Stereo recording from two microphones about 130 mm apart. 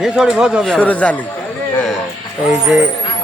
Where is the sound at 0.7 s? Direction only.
10° left (ahead or behind).